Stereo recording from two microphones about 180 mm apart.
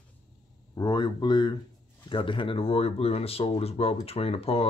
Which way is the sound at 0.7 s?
25° left (ahead or behind).